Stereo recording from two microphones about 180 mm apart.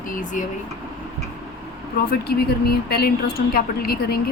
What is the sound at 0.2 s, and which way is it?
Speech, 45° left (ahead or behind).